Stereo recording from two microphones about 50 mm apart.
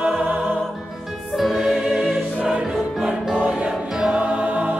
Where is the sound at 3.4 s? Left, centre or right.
Right.